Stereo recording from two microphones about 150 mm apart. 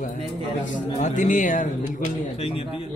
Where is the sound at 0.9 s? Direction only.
50° left (ahead or behind).